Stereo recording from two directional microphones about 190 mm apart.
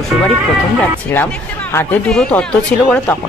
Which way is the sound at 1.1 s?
10° left (ahead or behind).